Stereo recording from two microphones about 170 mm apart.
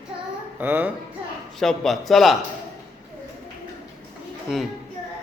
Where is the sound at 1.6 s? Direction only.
Centre (ahead or behind).